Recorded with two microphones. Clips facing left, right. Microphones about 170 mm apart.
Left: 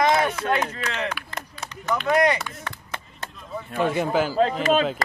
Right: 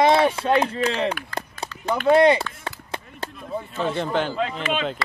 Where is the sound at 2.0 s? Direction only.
30° right (ahead or behind).